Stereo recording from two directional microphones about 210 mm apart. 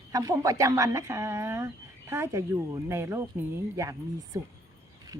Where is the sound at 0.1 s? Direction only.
15° right (ahead or behind).